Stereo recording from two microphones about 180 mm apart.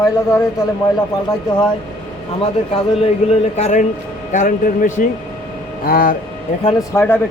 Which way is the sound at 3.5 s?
40° left (ahead or behind).